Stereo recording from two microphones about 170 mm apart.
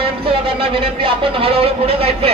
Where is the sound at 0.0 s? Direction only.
30° right (ahead or behind).